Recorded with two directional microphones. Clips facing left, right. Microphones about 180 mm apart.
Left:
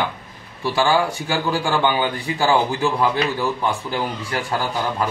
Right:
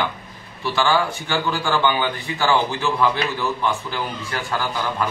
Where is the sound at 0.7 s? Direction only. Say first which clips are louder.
Left 1 dB; 35° left (ahead or behind).